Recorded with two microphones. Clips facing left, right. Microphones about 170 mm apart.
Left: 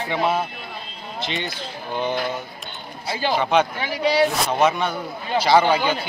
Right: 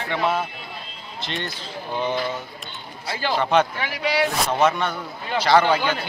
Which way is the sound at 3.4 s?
Centre (ahead or behind).